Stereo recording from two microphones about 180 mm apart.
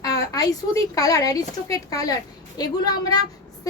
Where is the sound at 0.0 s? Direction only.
20° left (ahead or behind).